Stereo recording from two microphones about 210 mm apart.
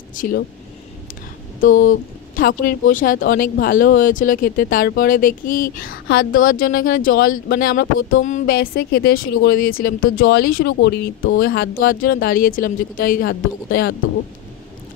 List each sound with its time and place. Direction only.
0.1 s speech: 40° left (ahead or behind)
1.9 s speech: 40° left (ahead or behind)